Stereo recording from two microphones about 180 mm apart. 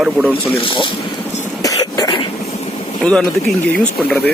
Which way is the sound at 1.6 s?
20° left (ahead or behind).